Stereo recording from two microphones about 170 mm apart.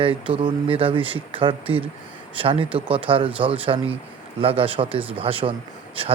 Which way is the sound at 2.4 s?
35° right (ahead or behind).